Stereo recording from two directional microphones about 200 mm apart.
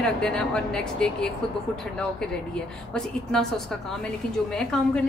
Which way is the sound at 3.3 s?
5° left (ahead or behind).